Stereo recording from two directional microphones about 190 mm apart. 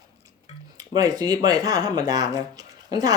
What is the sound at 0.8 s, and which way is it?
Speech, 20° right (ahead or behind).